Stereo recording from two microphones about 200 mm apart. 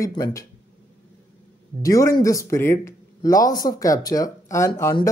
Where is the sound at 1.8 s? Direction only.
15° left (ahead or behind).